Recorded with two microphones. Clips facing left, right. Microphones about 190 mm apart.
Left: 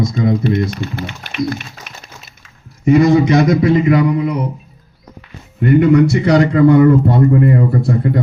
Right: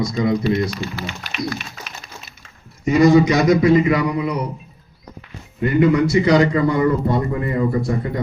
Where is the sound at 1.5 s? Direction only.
55° left (ahead or behind).